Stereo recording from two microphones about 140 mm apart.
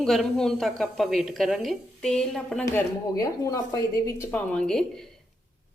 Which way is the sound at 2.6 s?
20° left (ahead or behind).